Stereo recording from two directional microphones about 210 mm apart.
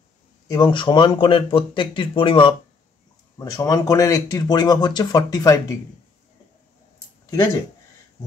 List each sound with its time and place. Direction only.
0.5 s speech: 20° left (ahead or behind)